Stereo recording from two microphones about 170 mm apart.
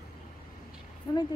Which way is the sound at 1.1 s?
25° left (ahead or behind).